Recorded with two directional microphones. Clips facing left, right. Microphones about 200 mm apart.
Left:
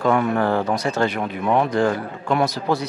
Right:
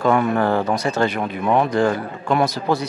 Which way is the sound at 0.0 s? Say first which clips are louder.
Right 1 dB; 20° right (ahead or behind).